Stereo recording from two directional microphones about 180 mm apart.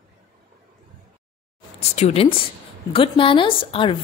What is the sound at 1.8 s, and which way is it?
A woman's voice, 35° left (ahead or behind).